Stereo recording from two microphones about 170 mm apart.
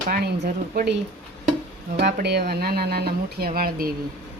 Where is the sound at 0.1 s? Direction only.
60° right (ahead or behind).